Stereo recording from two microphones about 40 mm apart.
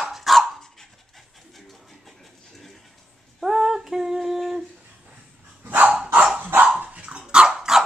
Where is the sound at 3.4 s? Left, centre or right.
Centre.